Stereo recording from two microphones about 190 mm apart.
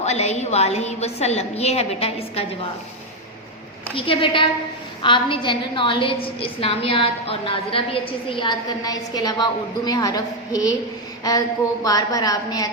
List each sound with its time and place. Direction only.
0.0 s a woman's voice: 35° left (ahead or behind)
3.9 s a woman's voice: 30° left (ahead or behind)